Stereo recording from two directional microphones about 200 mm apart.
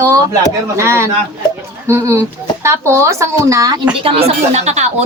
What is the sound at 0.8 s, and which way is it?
Speech, 15° right (ahead or behind).